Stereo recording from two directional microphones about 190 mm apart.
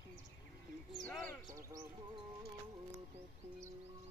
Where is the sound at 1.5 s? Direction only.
15° right (ahead or behind).